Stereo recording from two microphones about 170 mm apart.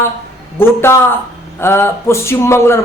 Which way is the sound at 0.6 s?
15° left (ahead or behind).